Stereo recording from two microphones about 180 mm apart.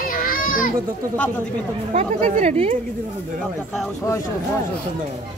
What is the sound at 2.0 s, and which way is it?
Speech, 40° right (ahead or behind).